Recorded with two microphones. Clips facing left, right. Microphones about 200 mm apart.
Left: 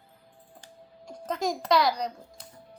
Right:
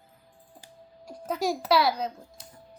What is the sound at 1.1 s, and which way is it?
Speech, 10° right (ahead or behind).